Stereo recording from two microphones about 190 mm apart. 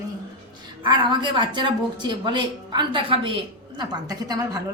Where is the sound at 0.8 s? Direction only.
25° right (ahead or behind).